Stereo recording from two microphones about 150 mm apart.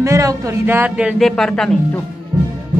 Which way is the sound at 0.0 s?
20° right (ahead or behind).